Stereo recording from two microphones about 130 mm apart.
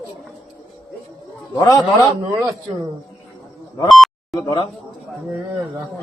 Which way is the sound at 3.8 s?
Centre (ahead or behind).